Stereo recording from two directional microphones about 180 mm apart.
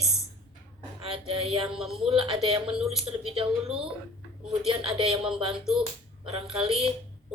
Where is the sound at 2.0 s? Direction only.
30° right (ahead or behind).